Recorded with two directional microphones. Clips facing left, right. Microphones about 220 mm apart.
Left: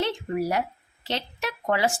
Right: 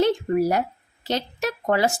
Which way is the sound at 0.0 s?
45° right (ahead or behind).